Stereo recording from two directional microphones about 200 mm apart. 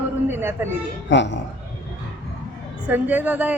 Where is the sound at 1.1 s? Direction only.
60° left (ahead or behind).